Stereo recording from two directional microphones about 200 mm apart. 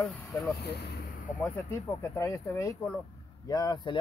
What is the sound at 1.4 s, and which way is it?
Speech, 15° left (ahead or behind).